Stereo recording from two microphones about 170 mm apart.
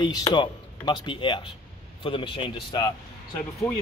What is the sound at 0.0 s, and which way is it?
Speech, 25° left (ahead or behind).